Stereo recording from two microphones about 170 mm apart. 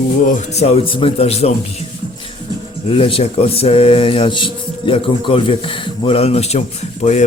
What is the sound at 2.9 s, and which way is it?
A man's voice, 35° left (ahead or behind).